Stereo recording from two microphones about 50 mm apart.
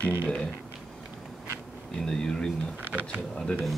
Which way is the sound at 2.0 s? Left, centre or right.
Centre.